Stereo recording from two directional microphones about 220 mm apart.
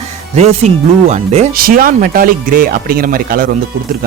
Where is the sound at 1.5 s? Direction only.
40° right (ahead or behind).